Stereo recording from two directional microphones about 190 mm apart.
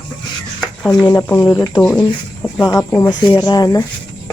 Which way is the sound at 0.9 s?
20° left (ahead or behind).